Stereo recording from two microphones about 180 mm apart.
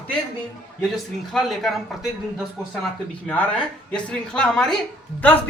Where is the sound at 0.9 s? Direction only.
Centre (ahead or behind).